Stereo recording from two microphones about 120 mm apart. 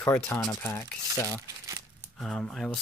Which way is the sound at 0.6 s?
25° left (ahead or behind).